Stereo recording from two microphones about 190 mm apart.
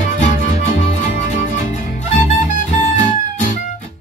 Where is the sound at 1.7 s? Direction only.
40° left (ahead or behind).